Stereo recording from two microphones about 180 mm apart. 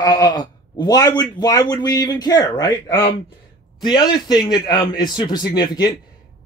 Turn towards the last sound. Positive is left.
turn(degrees=20)  # may be behind; listen again after turning